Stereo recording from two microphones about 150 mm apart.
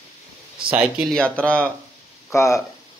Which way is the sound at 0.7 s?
5° right (ahead or behind).